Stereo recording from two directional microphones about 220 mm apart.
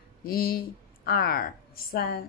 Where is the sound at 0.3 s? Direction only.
40° left (ahead or behind).